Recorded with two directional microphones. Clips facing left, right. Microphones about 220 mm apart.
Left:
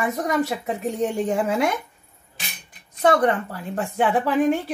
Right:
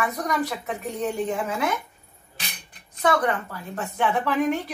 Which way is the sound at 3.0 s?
35° left (ahead or behind).